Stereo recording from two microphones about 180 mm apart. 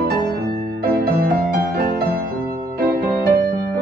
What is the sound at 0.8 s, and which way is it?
Music, 60° right (ahead or behind).